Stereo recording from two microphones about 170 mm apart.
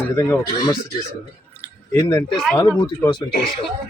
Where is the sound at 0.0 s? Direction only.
20° left (ahead or behind).